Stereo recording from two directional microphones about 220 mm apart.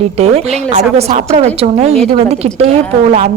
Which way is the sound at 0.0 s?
30° right (ahead or behind).